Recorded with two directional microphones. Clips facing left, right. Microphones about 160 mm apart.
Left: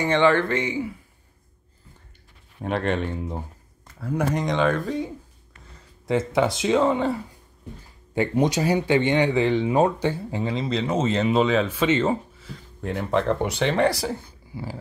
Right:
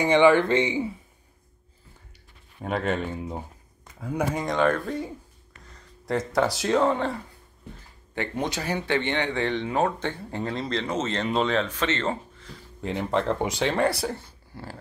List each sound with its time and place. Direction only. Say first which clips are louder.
0.0 s speech: right 2 dB; 15° right (ahead or behind)
2.6 s speech: left 2 dB; centre (ahead or behind)
8.1 s speech: left 7 dB; 15° left (ahead or behind)
13.3 s speech: left 2 dB; 10° right (ahead or behind)